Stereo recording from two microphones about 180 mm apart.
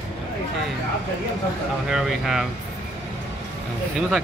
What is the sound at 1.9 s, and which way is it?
Speech, centre (ahead or behind).